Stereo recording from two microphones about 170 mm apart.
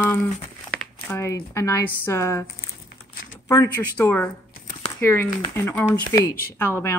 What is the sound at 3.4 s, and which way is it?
Speech, 15° left (ahead or behind).